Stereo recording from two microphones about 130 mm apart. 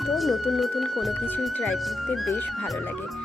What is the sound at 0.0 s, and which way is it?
Speech, centre (ahead or behind).